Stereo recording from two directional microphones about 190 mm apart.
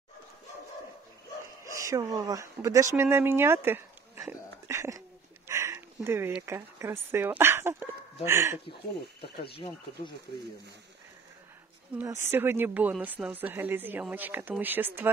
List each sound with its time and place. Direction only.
1.7 s speech: 15° right (ahead or behind)
12.0 s speech: 15° right (ahead or behind)